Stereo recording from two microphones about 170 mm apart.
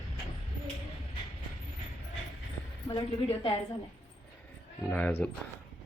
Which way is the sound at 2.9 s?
30° left (ahead or behind).